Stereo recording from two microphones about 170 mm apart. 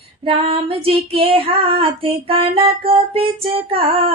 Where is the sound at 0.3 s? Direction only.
35° right (ahead or behind).